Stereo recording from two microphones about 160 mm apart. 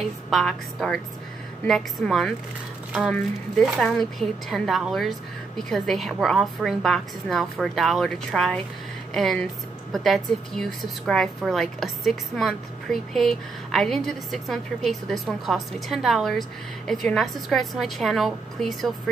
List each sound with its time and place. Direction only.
0.0 s a woman's voice: centre (ahead or behind)